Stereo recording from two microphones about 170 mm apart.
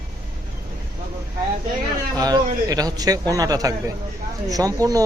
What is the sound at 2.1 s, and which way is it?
Speech, 20° right (ahead or behind).